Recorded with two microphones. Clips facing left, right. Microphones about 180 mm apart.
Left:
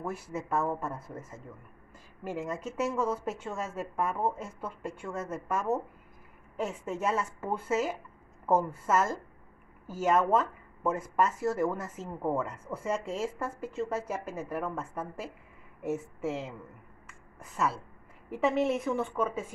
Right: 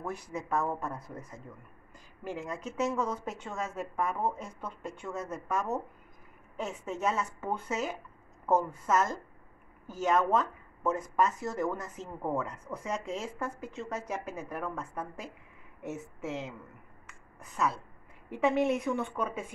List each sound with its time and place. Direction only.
0.0 s speech: 5° left (ahead or behind)
2.2 s a woman's voice: 5° left (ahead or behind)